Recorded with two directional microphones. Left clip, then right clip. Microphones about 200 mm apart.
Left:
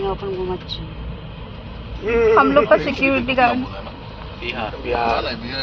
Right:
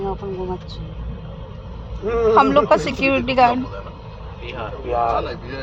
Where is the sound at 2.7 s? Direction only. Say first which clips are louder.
Left 1 dB; 45° right (ahead or behind).